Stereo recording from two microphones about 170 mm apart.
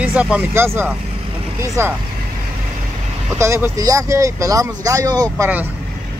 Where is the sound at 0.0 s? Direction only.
10° right (ahead or behind).